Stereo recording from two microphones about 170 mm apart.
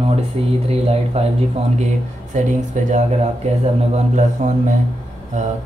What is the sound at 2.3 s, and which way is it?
Speech, 45° right (ahead or behind).